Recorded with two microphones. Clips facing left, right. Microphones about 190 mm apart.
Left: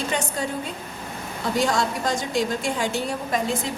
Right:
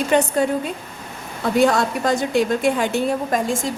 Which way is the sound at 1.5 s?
60° right (ahead or behind).